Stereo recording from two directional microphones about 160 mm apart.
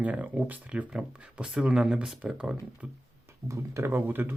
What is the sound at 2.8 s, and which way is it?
Speech, 15° right (ahead or behind).